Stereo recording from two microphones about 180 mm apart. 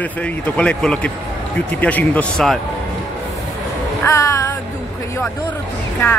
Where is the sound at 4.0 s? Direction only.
15° left (ahead or behind).